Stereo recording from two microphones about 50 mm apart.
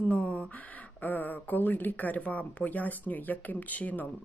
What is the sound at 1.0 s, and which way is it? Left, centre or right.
Speech, left.